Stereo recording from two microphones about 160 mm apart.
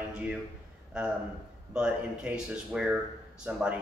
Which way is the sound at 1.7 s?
5° right (ahead or behind).